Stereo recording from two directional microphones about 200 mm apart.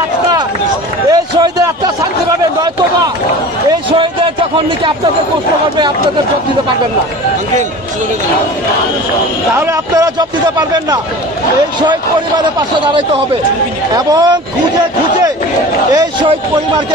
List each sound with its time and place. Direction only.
1.1 s run: 20° right (ahead or behind)
9.6 s a man's voice: 15° right (ahead or behind)
11.8 s a man's voice: 20° right (ahead or behind)
15.9 s a man's voice: 20° right (ahead or behind)